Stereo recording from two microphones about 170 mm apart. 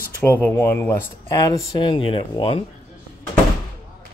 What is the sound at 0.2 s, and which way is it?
Speech, 10° left (ahead or behind).